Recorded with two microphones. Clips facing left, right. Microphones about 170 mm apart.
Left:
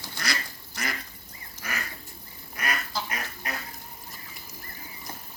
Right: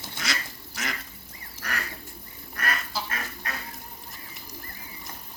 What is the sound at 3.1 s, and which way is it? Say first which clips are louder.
Duck: even; 15° left (ahead or behind).